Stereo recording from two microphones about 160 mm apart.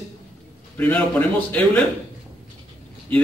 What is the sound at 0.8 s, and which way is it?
A man's voice, 10° left (ahead or behind).